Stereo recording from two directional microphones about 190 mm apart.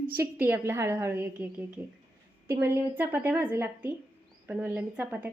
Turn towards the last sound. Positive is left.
turn(degrees=-10)  # may be behind; listen again after turning